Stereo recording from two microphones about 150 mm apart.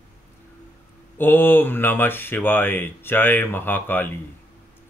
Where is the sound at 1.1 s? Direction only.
15° left (ahead or behind).